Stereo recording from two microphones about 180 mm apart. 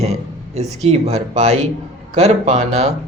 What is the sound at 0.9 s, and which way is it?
A man's voice, 40° right (ahead or behind).